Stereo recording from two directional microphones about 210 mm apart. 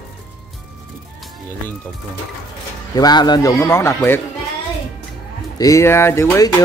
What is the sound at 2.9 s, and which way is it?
Speech, 20° left (ahead or behind).